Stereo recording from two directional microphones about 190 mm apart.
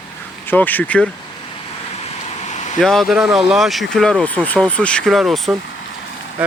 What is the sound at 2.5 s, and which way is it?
Vehicle, 40° left (ahead or behind).